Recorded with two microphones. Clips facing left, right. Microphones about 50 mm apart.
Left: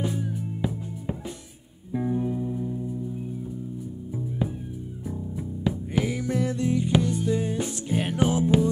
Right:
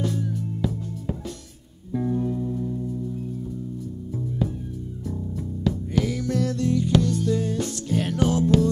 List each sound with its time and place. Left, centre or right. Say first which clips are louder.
0.0 s music: right 2 dB; centre
5.6 s music: right 2 dB; centre